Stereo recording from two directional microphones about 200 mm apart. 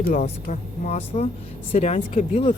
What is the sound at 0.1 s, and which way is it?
Speech, 35° left (ahead or behind).